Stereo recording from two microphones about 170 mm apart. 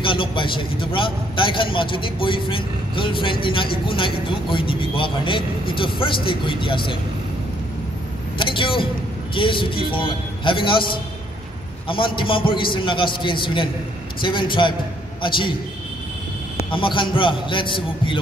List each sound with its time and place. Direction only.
0.0 s a man's voice: 30° left (ahead or behind)
8.4 s a sound: 30° left (ahead or behind)
9.3 s a man's voice: 30° left (ahead or behind)
16.5 s a man's voice: 30° left (ahead or behind)